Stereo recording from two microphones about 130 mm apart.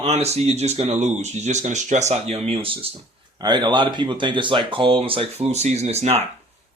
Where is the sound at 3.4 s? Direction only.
35° right (ahead or behind).